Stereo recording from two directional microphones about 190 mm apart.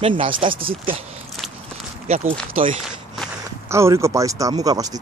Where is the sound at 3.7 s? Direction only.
15° right (ahead or behind).